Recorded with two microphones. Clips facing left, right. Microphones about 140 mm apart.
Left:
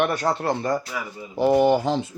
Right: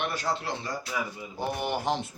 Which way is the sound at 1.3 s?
90° left.